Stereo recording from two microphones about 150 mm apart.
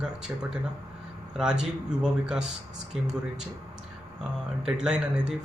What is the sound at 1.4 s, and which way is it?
Speech, 5° right (ahead or behind).